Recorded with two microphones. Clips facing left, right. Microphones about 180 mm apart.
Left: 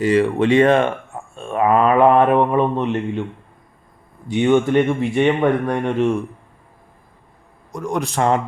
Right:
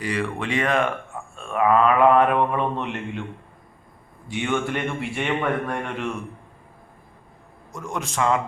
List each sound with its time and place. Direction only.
0.0 s speech: 25° left (ahead or behind)
4.3 s speech: 20° left (ahead or behind)
8.1 s speech: 35° left (ahead or behind)